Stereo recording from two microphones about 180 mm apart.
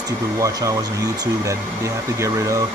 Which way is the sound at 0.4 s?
20° right (ahead or behind).